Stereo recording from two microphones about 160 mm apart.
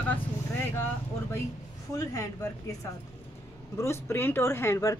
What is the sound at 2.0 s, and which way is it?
Speech, 20° left (ahead or behind).